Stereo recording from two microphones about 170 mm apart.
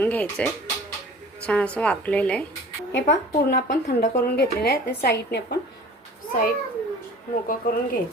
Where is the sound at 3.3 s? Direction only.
75° left (ahead or behind).